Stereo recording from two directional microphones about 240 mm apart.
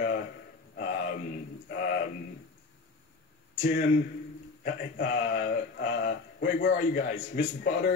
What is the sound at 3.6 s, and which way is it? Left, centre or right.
Speech, left.